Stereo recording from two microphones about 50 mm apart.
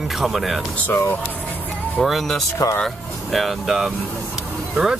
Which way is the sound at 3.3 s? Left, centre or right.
Centre.